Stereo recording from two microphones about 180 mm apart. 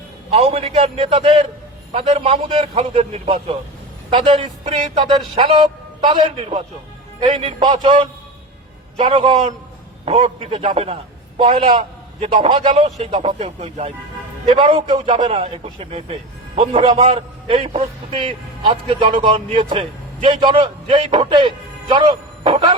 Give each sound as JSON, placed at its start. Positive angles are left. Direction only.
{"t": 0.3, "sound": "a man's voice", "side_deg": -30}